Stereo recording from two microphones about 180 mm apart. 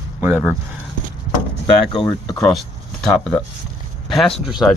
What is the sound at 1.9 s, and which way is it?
Speech, 20° left (ahead or behind).